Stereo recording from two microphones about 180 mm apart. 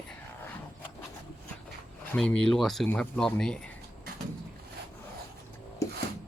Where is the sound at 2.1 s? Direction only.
Centre (ahead or behind).